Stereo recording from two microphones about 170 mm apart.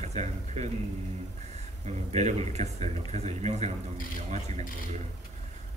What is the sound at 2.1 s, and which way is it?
Speech, 40° right (ahead or behind).